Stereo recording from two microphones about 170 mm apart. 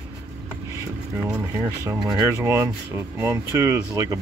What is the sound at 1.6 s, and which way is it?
Speech, 20° right (ahead or behind).